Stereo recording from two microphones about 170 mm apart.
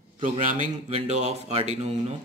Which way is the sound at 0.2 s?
45° right (ahead or behind).